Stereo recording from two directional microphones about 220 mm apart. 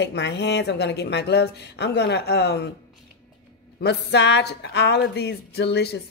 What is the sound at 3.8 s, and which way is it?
A woman's voice, 50° left (ahead or behind).